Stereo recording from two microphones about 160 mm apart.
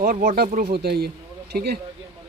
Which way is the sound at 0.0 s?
60° right (ahead or behind).